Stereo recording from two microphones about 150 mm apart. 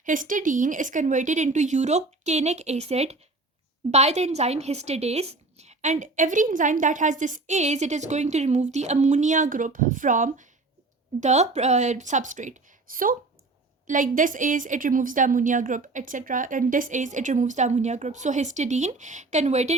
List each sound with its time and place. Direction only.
0.0 s a woman's voice: 60° right (ahead or behind)